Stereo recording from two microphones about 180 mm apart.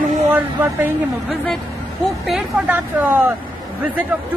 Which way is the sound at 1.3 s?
Centre (ahead or behind).